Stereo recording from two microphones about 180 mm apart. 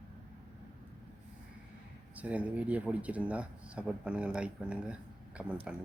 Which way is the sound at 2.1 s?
10° right (ahead or behind).